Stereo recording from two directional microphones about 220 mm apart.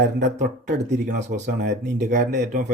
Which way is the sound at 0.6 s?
35° right (ahead or behind).